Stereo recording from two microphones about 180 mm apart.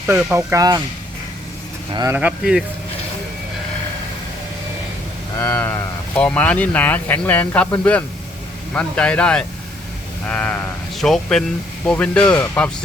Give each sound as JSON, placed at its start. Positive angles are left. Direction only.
{"t": 0.1, "sound": "speech", "side_deg": -10}
{"t": 1.9, "sound": "speech", "side_deg": -25}
{"t": 2.1, "sound": "speech", "side_deg": -5}
{"t": 5.5, "sound": "speech", "side_deg": 10}